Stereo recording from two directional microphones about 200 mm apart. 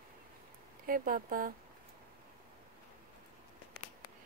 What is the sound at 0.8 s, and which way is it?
Speech, 45° right (ahead or behind).